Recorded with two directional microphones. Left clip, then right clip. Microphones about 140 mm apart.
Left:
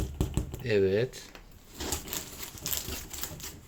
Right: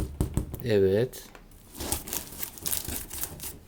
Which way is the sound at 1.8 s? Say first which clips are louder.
Right 1 dB; 70° right (ahead or behind).